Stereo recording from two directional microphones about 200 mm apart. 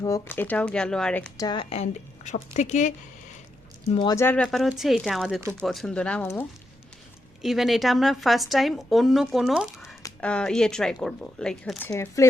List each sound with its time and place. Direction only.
0.0 s speech: 15° left (ahead or behind)
1.4 s a woman's voice: 25° left (ahead or behind)
3.9 s a woman's voice: 20° left (ahead or behind)
7.4 s a woman's voice: centre (ahead or behind); by 12.3 s 15° left (ahead or behind)